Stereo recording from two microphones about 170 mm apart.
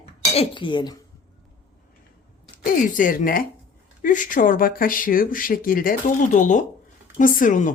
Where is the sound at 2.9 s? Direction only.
55° left (ahead or behind).